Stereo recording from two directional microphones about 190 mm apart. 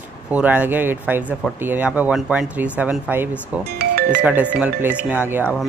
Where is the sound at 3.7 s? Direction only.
55° right (ahead or behind).